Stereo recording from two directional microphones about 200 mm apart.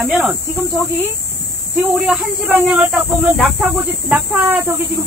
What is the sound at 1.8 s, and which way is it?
Speech, 5° right (ahead or behind).